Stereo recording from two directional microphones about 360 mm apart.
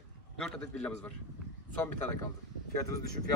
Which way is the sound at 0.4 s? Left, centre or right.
Centre.